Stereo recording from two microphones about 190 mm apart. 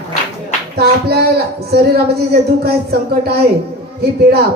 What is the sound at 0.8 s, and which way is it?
Speech, 55° right (ahead or behind).